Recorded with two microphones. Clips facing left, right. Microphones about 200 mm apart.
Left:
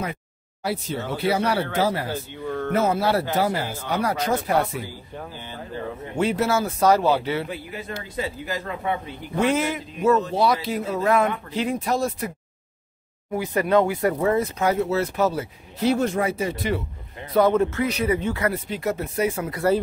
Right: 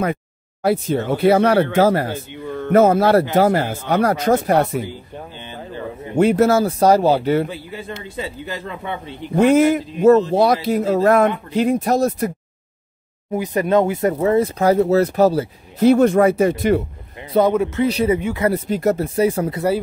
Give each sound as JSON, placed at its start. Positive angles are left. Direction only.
{"t": 0.0, "sound": "speech", "side_deg": -55}
{"t": 2.0, "sound": "speech", "side_deg": -15}
{"t": 2.7, "sound": "speech", "side_deg": -50}
{"t": 6.1, "sound": "speech", "side_deg": -45}
{"t": 7.4, "sound": "a man's voice", "side_deg": -30}
{"t": 9.3, "sound": "speech", "side_deg": -45}
{"t": 13.3, "sound": "a man's voice", "side_deg": -20}
{"t": 15.8, "sound": "speech", "side_deg": -55}
{"t": 17.5, "sound": "speech", "side_deg": -15}
{"t": 17.8, "sound": "a man's voice", "side_deg": -30}
{"t": 18.5, "sound": "speech", "side_deg": -40}